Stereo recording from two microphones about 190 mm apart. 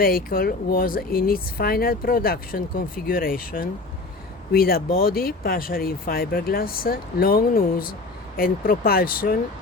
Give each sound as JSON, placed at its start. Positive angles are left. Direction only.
{"t": 0.0, "sound": "speech", "side_deg": 50}